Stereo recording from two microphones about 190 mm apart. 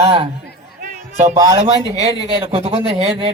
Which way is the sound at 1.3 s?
15° right (ahead or behind).